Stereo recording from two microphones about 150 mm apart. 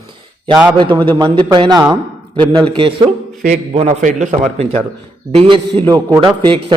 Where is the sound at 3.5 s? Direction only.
50° right (ahead or behind).